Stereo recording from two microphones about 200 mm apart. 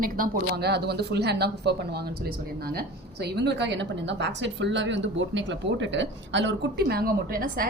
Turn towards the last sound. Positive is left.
turn(degrees=-45)  # may be behind; listen again after turning